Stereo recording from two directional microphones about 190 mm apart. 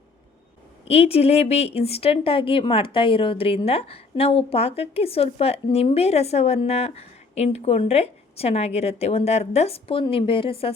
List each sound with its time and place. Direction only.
0.9 s a woman's voice: 30° left (ahead or behind)